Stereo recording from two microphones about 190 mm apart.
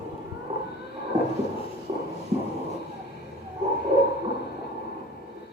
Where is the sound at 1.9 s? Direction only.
30° right (ahead or behind).